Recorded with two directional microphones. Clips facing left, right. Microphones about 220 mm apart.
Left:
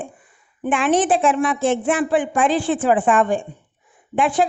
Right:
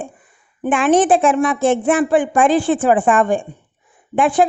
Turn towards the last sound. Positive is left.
turn(degrees=-50)  # may be behind; listen again after turning